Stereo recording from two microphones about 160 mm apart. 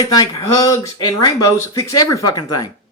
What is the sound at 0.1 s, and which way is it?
Speech, 20° left (ahead or behind).